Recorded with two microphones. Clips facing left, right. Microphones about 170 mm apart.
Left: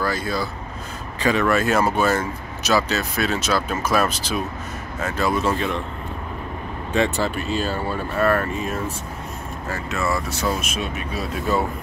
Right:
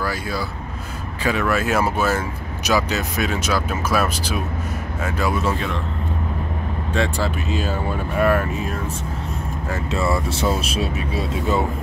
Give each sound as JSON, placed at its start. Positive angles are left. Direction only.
{"t": 0.0, "sound": "speech", "side_deg": -10}
{"t": 6.9, "sound": "speech", "side_deg": 5}
{"t": 9.8, "sound": "speech", "side_deg": -30}